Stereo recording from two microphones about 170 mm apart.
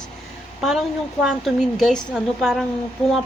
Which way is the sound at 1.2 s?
Centre (ahead or behind).